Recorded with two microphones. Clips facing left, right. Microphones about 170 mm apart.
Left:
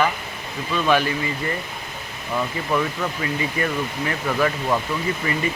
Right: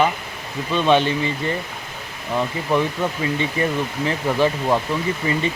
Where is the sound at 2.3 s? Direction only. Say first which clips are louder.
Right 3 dB; 20° right (ahead or behind).